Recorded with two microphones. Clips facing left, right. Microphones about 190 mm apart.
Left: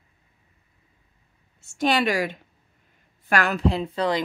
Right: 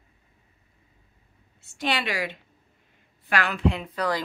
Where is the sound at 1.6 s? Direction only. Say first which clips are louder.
Left 6 dB; 45° left (ahead or behind).